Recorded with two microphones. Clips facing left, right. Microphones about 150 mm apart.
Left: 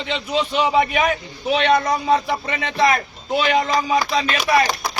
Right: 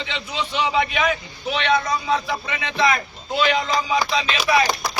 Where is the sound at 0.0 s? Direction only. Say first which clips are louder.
Left 6 dB; 40° left (ahead or behind).